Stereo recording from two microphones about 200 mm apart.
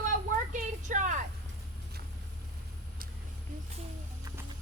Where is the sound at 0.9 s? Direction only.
40° right (ahead or behind).